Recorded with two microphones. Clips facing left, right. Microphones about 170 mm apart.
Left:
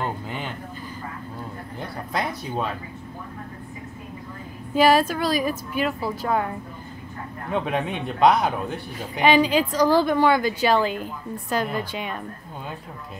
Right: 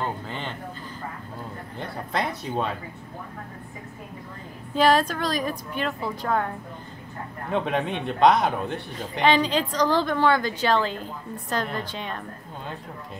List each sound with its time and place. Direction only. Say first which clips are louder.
0.0 s a sound: left 1 dB; 10° left (ahead or behind)
1.8 s speech: even; centre (ahead or behind)
4.7 s a man's voice: left 2 dB; 10° left (ahead or behind)
7.5 s a man's voice: even; 5° left (ahead or behind)